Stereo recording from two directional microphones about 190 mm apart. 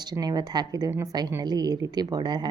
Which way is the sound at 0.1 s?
20° right (ahead or behind).